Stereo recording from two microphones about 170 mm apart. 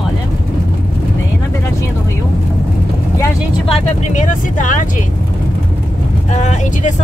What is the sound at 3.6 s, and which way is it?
Speech, 40° left (ahead or behind).